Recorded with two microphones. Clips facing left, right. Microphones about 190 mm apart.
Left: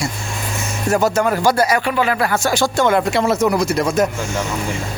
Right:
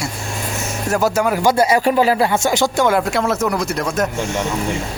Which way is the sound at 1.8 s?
35° right (ahead or behind).